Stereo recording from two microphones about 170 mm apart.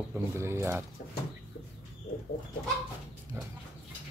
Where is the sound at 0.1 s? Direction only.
15° right (ahead or behind).